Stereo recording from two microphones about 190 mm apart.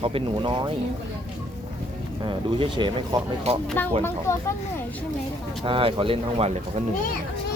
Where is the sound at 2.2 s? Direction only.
25° right (ahead or behind).